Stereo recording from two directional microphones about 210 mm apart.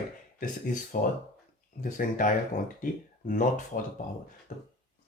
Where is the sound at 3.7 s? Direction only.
40° left (ahead or behind).